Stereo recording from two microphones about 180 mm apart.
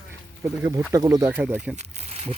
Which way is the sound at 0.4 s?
15° right (ahead or behind).